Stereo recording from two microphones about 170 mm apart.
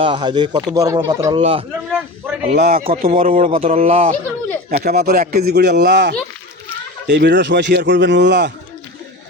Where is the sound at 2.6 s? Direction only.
60° right (ahead or behind).